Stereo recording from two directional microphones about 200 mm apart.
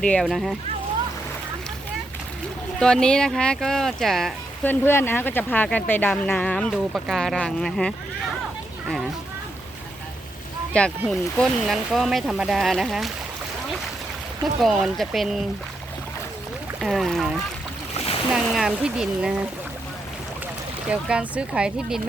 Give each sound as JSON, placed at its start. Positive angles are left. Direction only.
{"t": 0.0, "sound": "speech", "side_deg": 5}
{"t": 2.8, "sound": "speech", "side_deg": 5}
{"t": 10.8, "sound": "speech", "side_deg": 5}
{"t": 14.4, "sound": "speech", "side_deg": 0}
{"t": 16.8, "sound": "speech", "side_deg": 0}
{"t": 17.9, "sound": "boat", "side_deg": 30}
{"t": 18.3, "sound": "speech", "side_deg": 0}
{"t": 20.9, "sound": "speech", "side_deg": -5}